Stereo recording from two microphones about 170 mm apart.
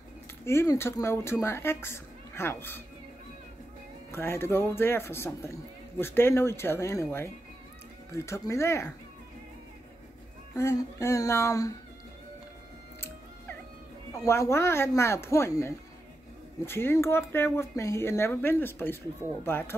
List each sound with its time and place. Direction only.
0.5 s a man's voice: 15° left (ahead or behind)
4.1 s a man's voice: 15° left (ahead or behind)
10.5 s speech: 20° left (ahead or behind)
14.2 s a man's voice: 15° left (ahead or behind)